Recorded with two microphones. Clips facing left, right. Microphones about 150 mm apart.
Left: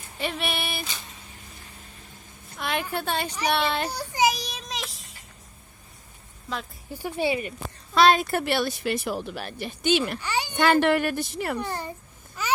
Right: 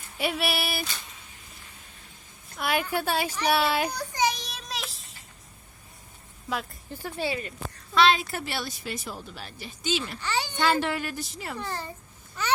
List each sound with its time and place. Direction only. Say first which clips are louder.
0.2 s a woman's voice: right 2 dB; 5° right (ahead or behind)
2.6 s a woman's voice: right 1 dB; 5° right (ahead or behind)
3.9 s child singing: left 3 dB; 10° left (ahead or behind)
7.0 s speech: left 5 dB; 15° left (ahead or behind)
7.9 s speech: left 3 dB; 45° left (ahead or behind)
10.2 s speech: left 1 dB; 15° left (ahead or behind)
10.5 s speech: left 7 dB; 55° left (ahead or behind)
11.6 s a child's voice: left 3 dB; 20° left (ahead or behind)
12.4 s a sound: even; 10° left (ahead or behind)